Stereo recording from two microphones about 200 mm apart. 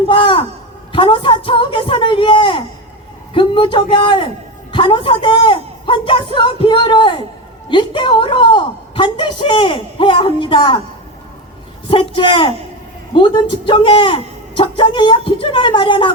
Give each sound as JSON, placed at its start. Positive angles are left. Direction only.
{"t": 0.1, "sound": "a sound", "side_deg": 25}
{"t": 0.9, "sound": "a woman's voice", "side_deg": 25}
{"t": 11.9, "sound": "a woman's voice", "side_deg": 25}